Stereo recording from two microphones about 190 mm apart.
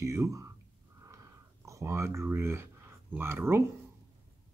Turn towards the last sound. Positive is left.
turn(degrees=-10)  # may be behind; listen again after turning